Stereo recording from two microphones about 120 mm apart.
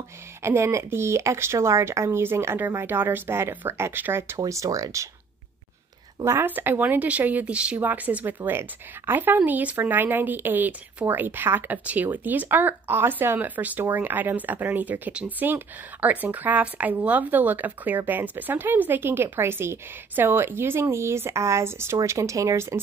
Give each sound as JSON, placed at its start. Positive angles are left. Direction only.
{"t": 0.4, "sound": "speech", "side_deg": -20}
{"t": 6.2, "sound": "speech", "side_deg": -20}